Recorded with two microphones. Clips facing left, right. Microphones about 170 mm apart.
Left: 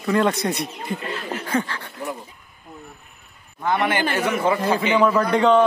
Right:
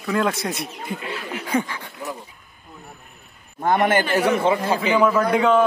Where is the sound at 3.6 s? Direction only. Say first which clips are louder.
Right 3 dB; 45° right (ahead or behind).